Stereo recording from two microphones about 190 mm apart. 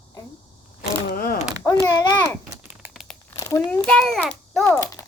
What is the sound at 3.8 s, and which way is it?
Speech, 5° left (ahead or behind).